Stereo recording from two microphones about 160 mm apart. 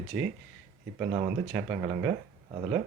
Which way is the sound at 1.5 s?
15° right (ahead or behind).